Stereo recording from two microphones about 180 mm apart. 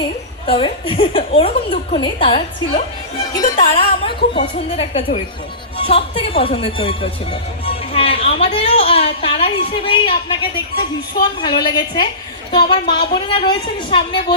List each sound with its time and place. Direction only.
0.4 s a woman's voice: 30° left (ahead or behind)